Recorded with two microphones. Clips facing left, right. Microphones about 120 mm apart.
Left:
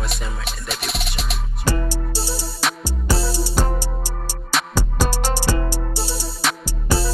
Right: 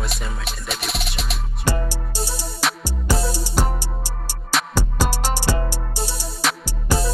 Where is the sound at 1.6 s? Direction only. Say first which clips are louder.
Left 1 dB; 15° right (ahead or behind).